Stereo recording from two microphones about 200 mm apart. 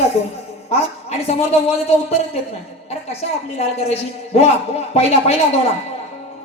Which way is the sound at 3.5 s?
30° left (ahead or behind).